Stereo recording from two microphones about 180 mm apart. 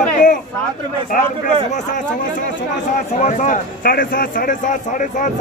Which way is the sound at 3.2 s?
45° left (ahead or behind).